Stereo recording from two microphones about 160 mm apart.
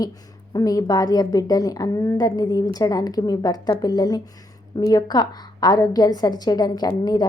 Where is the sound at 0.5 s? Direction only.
20° left (ahead or behind).